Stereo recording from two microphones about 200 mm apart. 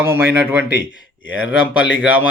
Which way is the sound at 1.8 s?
5° right (ahead or behind).